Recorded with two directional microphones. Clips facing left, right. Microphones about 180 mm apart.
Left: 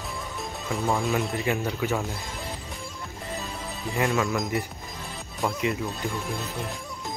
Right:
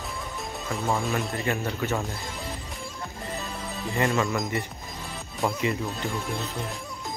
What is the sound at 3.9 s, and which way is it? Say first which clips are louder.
Speech: even; centre (ahead or behind).